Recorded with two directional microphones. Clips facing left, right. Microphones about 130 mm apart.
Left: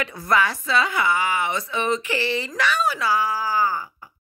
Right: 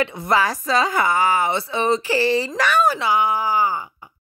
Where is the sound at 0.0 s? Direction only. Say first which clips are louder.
Right 3 dB; 25° right (ahead or behind).